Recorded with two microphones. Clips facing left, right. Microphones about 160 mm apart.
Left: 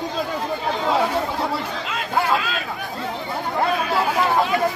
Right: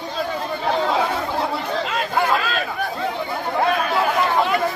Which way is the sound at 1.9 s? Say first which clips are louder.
Left 1 dB; 50° right (ahead or behind).